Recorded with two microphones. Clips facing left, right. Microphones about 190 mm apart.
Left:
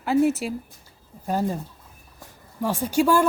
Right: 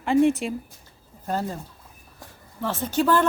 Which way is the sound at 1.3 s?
15° left (ahead or behind).